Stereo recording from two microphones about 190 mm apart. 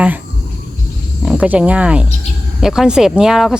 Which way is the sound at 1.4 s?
5° right (ahead or behind).